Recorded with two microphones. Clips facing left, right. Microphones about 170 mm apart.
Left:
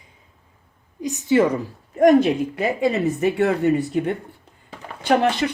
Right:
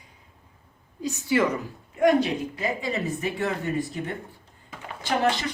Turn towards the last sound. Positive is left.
turn(degrees=60)  # may be behind; listen again after turning